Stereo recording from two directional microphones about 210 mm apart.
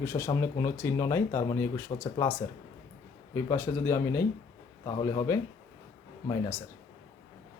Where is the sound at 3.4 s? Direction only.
10° left (ahead or behind).